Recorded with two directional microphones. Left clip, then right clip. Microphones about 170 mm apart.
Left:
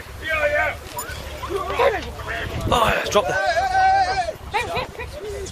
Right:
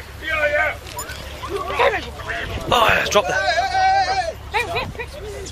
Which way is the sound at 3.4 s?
65° left (ahead or behind).